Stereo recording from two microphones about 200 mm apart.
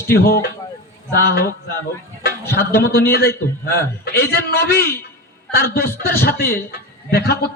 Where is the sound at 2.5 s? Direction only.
50° left (ahead or behind).